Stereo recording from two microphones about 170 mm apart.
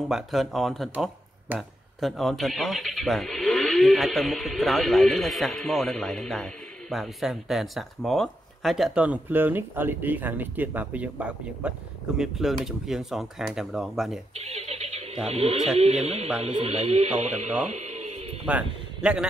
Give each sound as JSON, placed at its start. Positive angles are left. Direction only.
{"t": 0.1, "sound": "speech", "side_deg": 0}
{"t": 14.3, "sound": "a sound", "side_deg": -40}
{"t": 15.2, "sound": "speech", "side_deg": -35}
{"t": 17.6, "sound": "music", "side_deg": -40}
{"t": 18.5, "sound": "a man's voice", "side_deg": -5}